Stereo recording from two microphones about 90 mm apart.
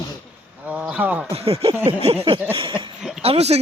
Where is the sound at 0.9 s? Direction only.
15° right (ahead or behind).